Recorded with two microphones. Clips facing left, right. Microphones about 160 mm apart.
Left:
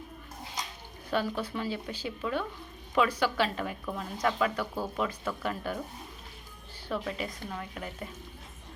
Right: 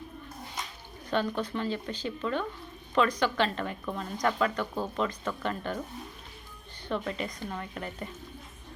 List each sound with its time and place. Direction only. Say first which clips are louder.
1.1 s speech: right 1 dB; 5° left (ahead or behind)
6.8 s a woman's voice: right 1 dB; 5° left (ahead or behind)